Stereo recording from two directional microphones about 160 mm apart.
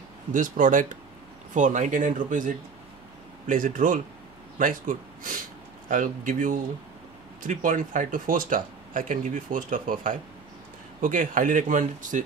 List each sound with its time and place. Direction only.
0.3 s speech: 55° right (ahead or behind)